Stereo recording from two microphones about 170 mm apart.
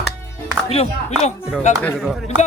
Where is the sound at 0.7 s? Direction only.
35° left (ahead or behind).